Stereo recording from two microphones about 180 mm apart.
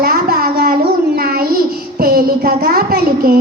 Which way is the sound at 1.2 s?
55° right (ahead or behind).